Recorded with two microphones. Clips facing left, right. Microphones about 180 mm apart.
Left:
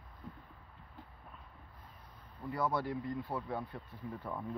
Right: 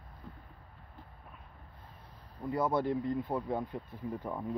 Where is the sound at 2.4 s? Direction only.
20° right (ahead or behind).